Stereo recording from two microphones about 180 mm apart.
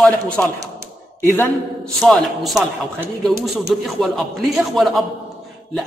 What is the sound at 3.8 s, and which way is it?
A man's voice, centre (ahead or behind).